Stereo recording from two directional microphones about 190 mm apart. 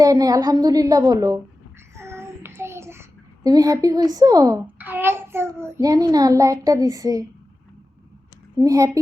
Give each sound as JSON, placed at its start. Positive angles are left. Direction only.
{"t": 0.0, "sound": "a woman's voice", "side_deg": -20}
{"t": 2.0, "sound": "child singing", "side_deg": -15}
{"t": 2.6, "sound": "a sound", "side_deg": -15}
{"t": 4.6, "sound": "a child's voice", "side_deg": -10}
{"t": 8.5, "sound": "a child's voice", "side_deg": -20}